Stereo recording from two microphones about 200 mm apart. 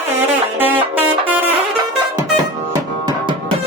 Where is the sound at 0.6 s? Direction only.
10° right (ahead or behind).